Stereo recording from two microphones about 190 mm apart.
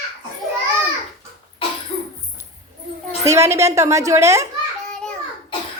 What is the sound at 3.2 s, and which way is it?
A woman's voice, 15° right (ahead or behind).